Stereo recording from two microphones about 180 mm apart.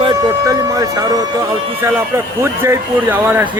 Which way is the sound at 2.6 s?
15° right (ahead or behind).